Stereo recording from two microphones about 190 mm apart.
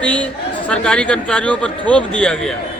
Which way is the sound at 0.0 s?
5° left (ahead or behind).